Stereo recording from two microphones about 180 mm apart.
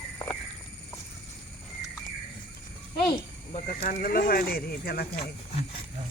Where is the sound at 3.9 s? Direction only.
50° left (ahead or behind).